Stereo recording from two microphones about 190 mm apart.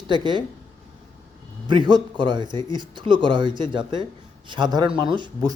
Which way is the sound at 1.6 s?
25° right (ahead or behind).